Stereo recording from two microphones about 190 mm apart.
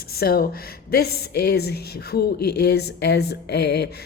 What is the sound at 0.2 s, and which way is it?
Speech, 55° left (ahead or behind).